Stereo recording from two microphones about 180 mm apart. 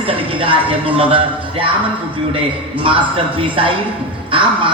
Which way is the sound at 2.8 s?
30° right (ahead or behind).